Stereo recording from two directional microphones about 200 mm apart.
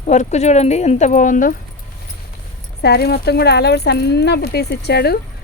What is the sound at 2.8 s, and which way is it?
Speech, 55° left (ahead or behind).